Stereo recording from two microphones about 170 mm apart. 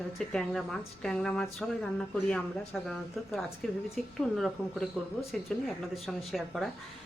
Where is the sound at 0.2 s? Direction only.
Centre (ahead or behind).